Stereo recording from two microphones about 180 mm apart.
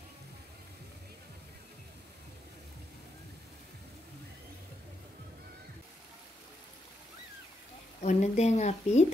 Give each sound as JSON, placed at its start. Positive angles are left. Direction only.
{"t": 8.0, "sound": "speech", "side_deg": 40}